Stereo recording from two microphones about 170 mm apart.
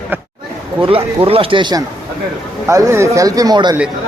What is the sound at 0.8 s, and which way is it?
Speech, 35° right (ahead or behind).